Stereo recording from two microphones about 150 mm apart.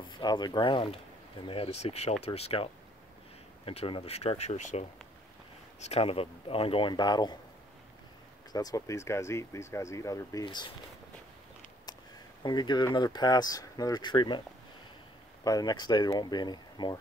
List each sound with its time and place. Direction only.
0.2 s speech: 30° left (ahead or behind)
8.5 s speech: 25° left (ahead or behind)
12.4 s speech: 30° left (ahead or behind)
15.4 s speech: 25° left (ahead or behind)